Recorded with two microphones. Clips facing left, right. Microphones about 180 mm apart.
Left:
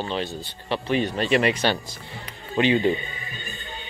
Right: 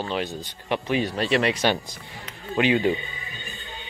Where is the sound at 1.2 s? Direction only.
Centre (ahead or behind).